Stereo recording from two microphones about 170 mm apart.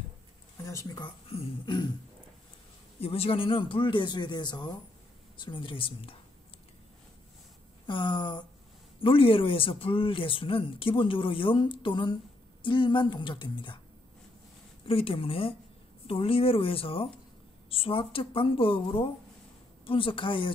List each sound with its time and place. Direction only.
0.7 s a man's voice: 20° left (ahead or behind)
3.0 s a man's voice: 35° left (ahead or behind)
7.8 s a man's voice: 30° left (ahead or behind)
14.9 s speech: 35° left (ahead or behind)